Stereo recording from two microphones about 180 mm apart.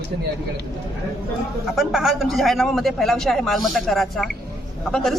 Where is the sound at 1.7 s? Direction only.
Centre (ahead or behind).